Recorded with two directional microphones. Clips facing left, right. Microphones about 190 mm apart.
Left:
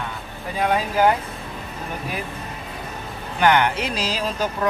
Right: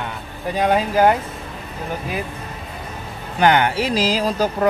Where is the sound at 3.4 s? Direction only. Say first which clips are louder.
Right 2 dB; 30° right (ahead or behind).